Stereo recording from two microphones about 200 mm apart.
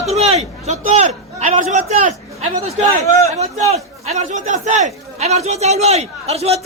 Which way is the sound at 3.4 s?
30° right (ahead or behind).